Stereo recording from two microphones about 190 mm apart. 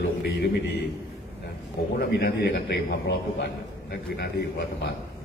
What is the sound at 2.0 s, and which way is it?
Speech, 60° left (ahead or behind).